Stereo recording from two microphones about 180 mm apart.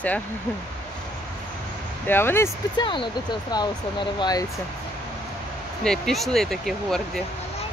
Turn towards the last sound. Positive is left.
turn(degrees=0)  # may be behind; listen again after turning